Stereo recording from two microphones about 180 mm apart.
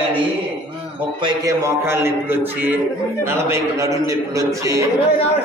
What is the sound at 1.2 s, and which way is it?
Speech, 20° right (ahead or behind).